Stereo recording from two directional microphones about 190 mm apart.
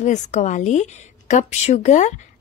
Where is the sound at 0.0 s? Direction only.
40° left (ahead or behind).